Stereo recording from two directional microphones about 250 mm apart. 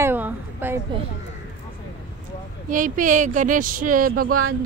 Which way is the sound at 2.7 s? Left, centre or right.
Right.